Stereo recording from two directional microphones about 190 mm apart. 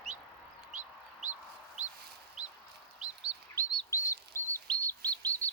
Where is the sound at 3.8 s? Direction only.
15° left (ahead or behind).